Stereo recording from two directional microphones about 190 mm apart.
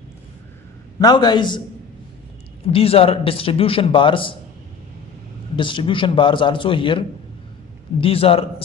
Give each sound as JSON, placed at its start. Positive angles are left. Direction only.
{"t": 0.9, "sound": "a man's voice", "side_deg": 20}
{"t": 2.6, "sound": "a man's voice", "side_deg": 30}
{"t": 5.6, "sound": "a man's voice", "side_deg": 25}
{"t": 8.0, "sound": "a man's voice", "side_deg": 30}